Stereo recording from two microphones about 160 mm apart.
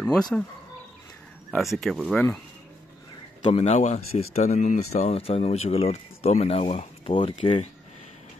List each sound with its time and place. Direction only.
0.3 s speech: 5° left (ahead or behind)
1.5 s speech: centre (ahead or behind)
3.4 s speech: 40° left (ahead or behind)